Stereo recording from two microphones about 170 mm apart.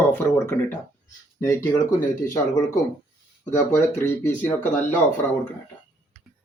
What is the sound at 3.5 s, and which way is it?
Speech, 15° left (ahead or behind).